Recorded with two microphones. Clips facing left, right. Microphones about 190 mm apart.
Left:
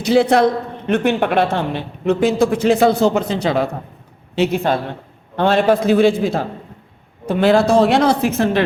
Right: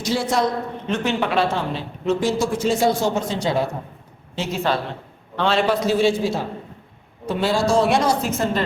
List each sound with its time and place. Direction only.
0.0 s a man's voice: 60° left (ahead or behind)